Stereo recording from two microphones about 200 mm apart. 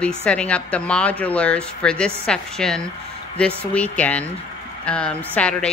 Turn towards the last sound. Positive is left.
turn(degrees=5)  # may be behind; listen again after turning